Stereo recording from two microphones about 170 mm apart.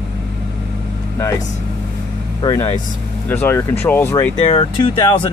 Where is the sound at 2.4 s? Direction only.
20° left (ahead or behind).